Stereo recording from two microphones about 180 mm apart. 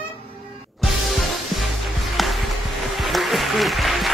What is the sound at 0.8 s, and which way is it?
Music, centre (ahead or behind).